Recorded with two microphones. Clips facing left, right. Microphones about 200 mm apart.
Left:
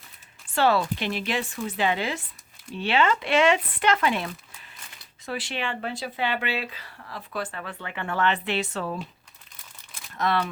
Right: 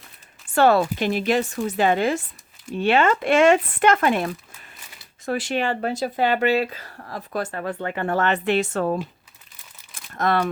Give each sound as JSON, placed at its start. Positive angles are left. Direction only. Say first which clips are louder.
{"t": 0.4, "sound": "speech", "louder": "right 5 dB", "side_deg": -50}
{"t": 10.1, "sound": "speech", "louder": "right 4 dB", "side_deg": -50}